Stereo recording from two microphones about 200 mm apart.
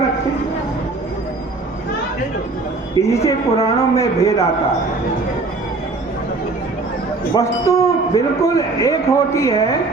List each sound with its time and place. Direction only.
3.0 s a man's voice: 15° left (ahead or behind)
7.3 s a man's voice: 15° left (ahead or behind)